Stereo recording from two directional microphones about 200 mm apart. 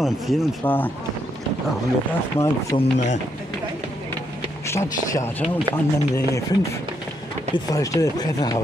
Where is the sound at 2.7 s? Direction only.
35° left (ahead or behind).